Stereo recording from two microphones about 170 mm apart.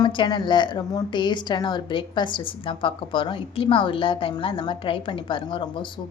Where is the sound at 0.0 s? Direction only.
25° left (ahead or behind).